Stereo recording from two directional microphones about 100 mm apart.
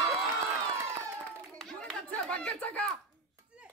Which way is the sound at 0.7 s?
30° right (ahead or behind).